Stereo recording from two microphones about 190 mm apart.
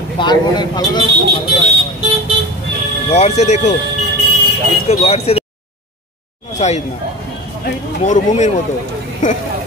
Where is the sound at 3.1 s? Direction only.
35° left (ahead or behind).